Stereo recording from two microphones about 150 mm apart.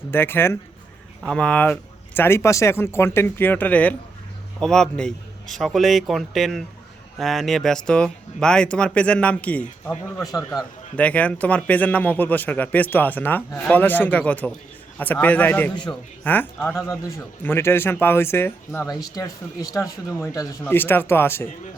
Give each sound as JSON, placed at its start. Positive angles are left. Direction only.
{"t": 0.1, "sound": "a man's voice", "side_deg": 15}